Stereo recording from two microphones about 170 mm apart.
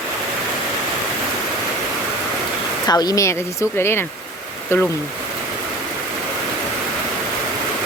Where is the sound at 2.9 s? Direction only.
25° left (ahead or behind).